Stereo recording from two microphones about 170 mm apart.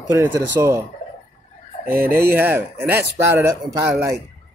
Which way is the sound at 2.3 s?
15° right (ahead or behind).